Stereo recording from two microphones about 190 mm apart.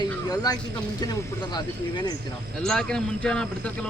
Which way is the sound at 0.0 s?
20° left (ahead or behind).